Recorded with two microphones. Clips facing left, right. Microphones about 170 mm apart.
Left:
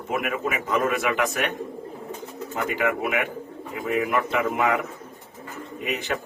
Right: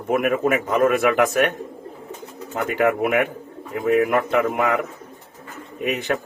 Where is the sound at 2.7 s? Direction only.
55° right (ahead or behind).